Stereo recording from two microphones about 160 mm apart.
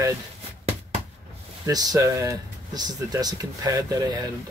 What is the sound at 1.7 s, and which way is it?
Speech, 25° right (ahead or behind).